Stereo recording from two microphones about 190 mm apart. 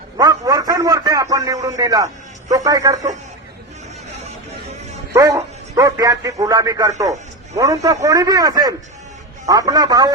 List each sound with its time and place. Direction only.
0.2 s a man's voice: 20° right (ahead or behind)
5.1 s a man's voice: 15° right (ahead or behind)